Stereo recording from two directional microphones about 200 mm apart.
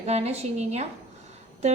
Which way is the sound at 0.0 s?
30° right (ahead or behind).